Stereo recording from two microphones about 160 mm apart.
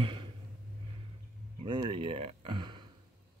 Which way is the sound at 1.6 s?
30° right (ahead or behind).